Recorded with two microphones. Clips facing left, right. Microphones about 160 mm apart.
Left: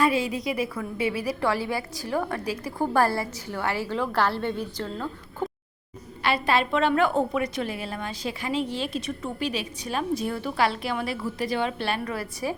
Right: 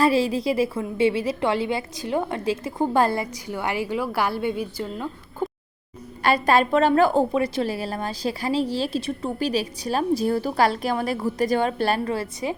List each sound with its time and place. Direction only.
0.0 s a woman's voice: 30° right (ahead or behind); by 5.5 s 10° right (ahead or behind)
6.2 s a woman's voice: 45° right (ahead or behind)
12.0 s a woman's voice: 25° right (ahead or behind)